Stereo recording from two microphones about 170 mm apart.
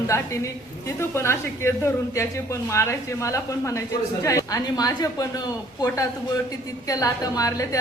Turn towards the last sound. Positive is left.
turn(degrees=20)  # may be behind; listen again after turning